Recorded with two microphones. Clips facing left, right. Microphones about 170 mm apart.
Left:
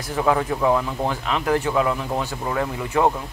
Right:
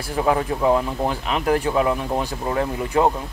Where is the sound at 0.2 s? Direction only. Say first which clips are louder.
Even; 25° right (ahead or behind).